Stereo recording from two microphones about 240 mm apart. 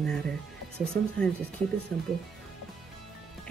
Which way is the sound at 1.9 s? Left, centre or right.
Centre.